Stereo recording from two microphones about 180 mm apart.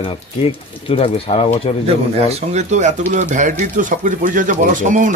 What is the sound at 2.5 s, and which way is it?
Speech, 40° right (ahead or behind).